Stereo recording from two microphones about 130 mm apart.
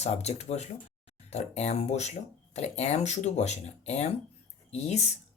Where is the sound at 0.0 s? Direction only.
55° left (ahead or behind).